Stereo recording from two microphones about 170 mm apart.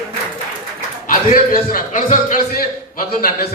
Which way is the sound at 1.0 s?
50° left (ahead or behind).